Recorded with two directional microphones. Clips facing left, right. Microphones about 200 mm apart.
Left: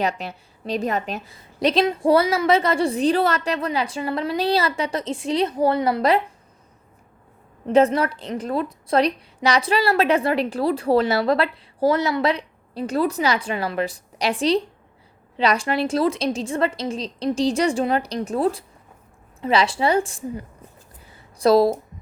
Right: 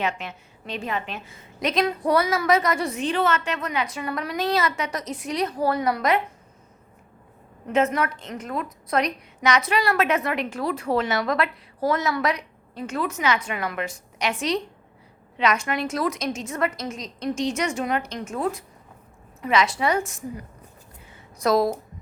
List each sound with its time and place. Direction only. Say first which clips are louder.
0.0 s a woman's voice: left 3 dB; 35° left (ahead or behind)
7.7 s a woman's voice: left 5 dB; 30° left (ahead or behind)
21.1 s a sound: left 5 dB; 30° left (ahead or behind)